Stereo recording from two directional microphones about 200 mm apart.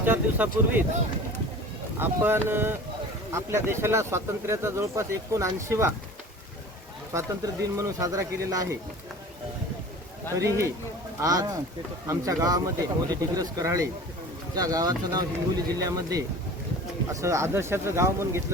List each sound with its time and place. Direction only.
0.0 s speech: 10° right (ahead or behind)
2.0 s speech: 10° right (ahead or behind)
7.1 s speech: 15° right (ahead or behind)
10.3 s speech: 15° right (ahead or behind)